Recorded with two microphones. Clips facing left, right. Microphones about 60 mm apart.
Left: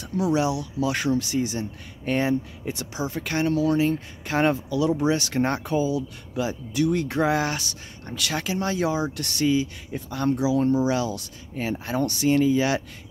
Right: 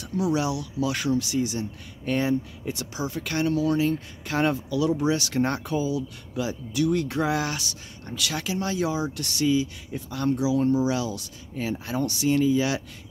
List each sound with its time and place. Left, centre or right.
0.2 s speech: left